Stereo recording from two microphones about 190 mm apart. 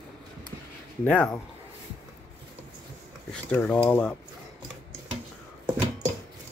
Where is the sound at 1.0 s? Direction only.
5° left (ahead or behind).